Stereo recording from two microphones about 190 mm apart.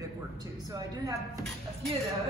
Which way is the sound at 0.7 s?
20° right (ahead or behind).